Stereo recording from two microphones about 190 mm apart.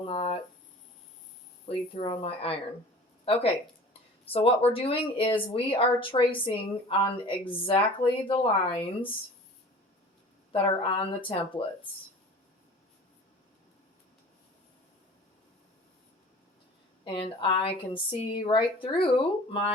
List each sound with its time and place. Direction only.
0.0 s speech: 30° left (ahead or behind)
1.6 s speech: 30° left (ahead or behind)
10.5 s speech: 30° left (ahead or behind)
17.0 s speech: 25° left (ahead or behind)